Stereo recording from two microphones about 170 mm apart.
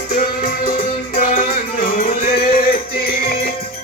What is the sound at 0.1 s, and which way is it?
Music, 55° left (ahead or behind).